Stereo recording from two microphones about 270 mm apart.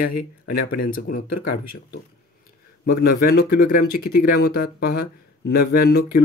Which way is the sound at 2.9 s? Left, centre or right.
Left.